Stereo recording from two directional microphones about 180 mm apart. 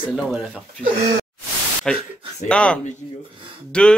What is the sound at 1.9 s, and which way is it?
Speech, 5° left (ahead or behind).